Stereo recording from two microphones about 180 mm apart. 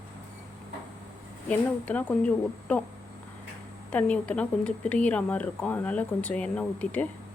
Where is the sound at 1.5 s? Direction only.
5° left (ahead or behind).